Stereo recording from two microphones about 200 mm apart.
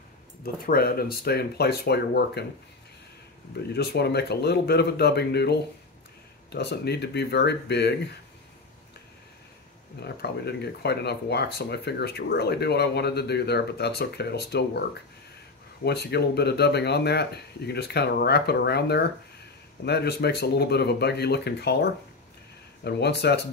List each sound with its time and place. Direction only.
0.7 s speech: 45° left (ahead or behind)
3.7 s speech: 55° left (ahead or behind)
10.0 s speech: 55° left (ahead or behind)
15.8 s speech: 55° left (ahead or behind)
22.8 s speech: 55° left (ahead or behind)